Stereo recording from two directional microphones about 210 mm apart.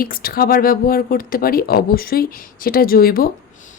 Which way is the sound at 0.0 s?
45° left (ahead or behind).